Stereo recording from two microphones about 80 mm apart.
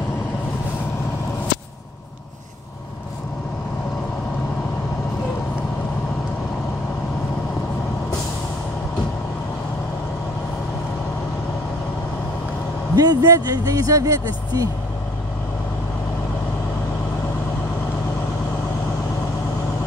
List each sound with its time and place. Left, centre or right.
12.9 s speech: right